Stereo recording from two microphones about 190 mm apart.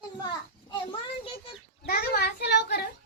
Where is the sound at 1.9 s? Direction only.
55° left (ahead or behind).